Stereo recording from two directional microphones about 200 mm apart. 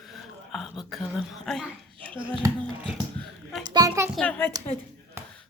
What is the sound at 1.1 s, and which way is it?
Speech, centre (ahead or behind).